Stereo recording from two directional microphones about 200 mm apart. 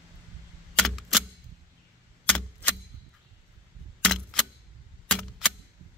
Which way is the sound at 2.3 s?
5° left (ahead or behind).